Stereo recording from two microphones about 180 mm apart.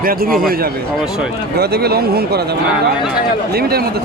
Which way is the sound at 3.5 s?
60° right (ahead or behind).